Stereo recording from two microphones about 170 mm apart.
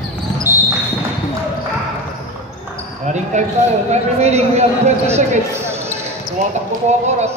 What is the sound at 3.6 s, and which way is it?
Speech, 40° right (ahead or behind).